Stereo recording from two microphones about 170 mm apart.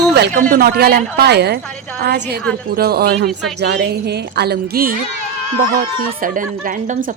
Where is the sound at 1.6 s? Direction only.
5° left (ahead or behind).